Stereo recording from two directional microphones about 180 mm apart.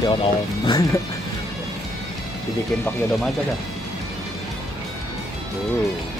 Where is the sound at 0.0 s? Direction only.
25° left (ahead or behind).